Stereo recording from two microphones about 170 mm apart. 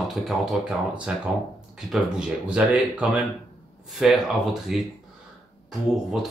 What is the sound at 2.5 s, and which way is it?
Speech, 5° right (ahead or behind).